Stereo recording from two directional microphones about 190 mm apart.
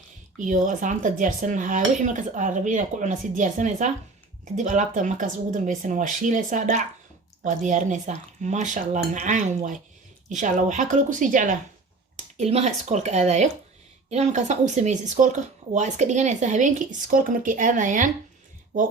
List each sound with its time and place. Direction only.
0.3 s speech: 45° right (ahead or behind)
12.1 s speech: 35° right (ahead or behind)